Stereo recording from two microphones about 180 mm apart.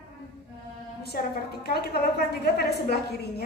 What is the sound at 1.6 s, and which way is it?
A woman's voice, 60° left (ahead or behind).